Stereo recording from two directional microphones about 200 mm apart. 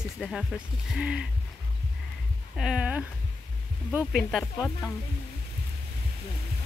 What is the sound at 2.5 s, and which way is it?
Speech, 5° right (ahead or behind).